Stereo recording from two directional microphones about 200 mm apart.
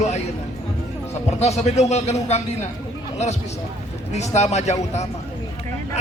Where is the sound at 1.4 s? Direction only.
35° left (ahead or behind).